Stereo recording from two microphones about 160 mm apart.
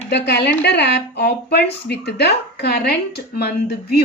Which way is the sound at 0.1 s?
90° left.